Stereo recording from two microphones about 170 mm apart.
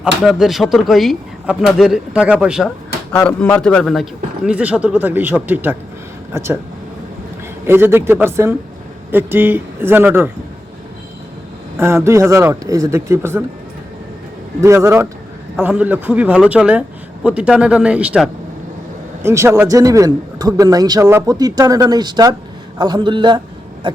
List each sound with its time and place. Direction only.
0.3 s speech: centre (ahead or behind)
3.1 s a man's voice: 10° left (ahead or behind); by 6.6 s 15° right (ahead or behind)
7.7 s a man's voice: 15° right (ahead or behind)
11.8 s a man's voice: 15° right (ahead or behind)
14.6 s a man's voice: 15° right (ahead or behind)
23.8 s a sound: 30° right (ahead or behind)